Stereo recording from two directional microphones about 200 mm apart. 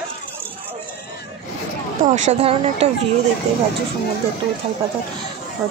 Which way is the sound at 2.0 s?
35° right (ahead or behind).